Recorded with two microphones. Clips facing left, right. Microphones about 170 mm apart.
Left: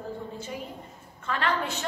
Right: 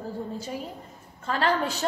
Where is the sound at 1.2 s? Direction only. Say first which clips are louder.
Right 3 dB; 35° right (ahead or behind).